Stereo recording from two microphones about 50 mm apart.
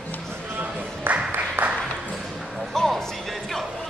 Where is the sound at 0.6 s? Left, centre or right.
Right.